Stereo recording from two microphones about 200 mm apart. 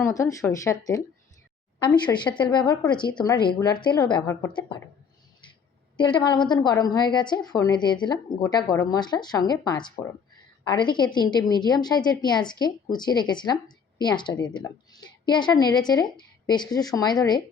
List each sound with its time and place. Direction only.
0.0 s speech: 15° left (ahead or behind)
2.4 s a woman's voice: 20° left (ahead or behind)
6.0 s a woman's voice: 20° left (ahead or behind)